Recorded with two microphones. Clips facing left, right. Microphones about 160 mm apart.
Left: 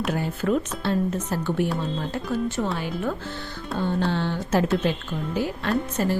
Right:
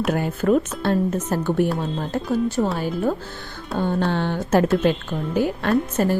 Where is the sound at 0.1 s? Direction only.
50° right (ahead or behind).